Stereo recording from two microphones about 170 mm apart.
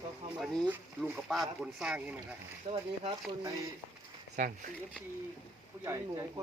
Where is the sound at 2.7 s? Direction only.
35° right (ahead or behind).